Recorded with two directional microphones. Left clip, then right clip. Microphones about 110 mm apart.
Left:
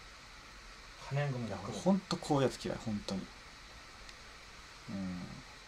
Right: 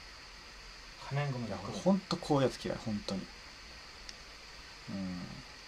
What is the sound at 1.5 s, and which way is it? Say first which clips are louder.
Speech: right 2 dB; 10° right (ahead or behind).